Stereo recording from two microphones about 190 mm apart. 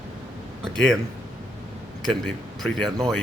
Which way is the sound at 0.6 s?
Centre (ahead or behind).